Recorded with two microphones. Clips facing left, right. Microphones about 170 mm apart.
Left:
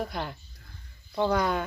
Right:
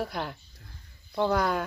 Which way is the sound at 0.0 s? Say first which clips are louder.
Even; centre (ahead or behind).